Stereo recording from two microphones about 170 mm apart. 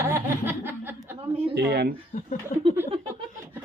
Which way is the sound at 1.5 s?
75° right (ahead or behind).